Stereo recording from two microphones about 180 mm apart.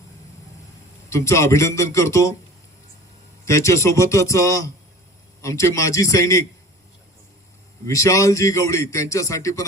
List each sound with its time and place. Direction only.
1.1 s a man's voice: 15° left (ahead or behind)
3.4 s a man's voice: 15° left (ahead or behind)
7.9 s a man's voice: 15° left (ahead or behind)